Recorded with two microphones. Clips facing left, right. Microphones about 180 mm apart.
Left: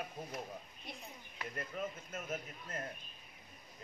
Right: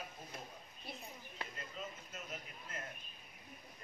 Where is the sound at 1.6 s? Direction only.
55° left (ahead or behind).